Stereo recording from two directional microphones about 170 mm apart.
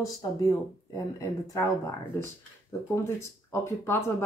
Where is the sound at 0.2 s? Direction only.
20° left (ahead or behind).